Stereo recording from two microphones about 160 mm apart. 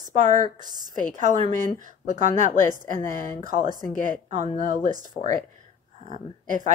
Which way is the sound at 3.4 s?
60° left (ahead or behind).